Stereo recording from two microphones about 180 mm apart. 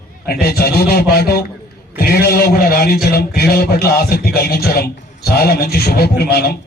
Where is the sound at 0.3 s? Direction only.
60° left (ahead or behind).